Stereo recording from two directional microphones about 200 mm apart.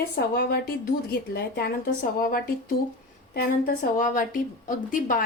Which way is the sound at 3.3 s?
45° left (ahead or behind).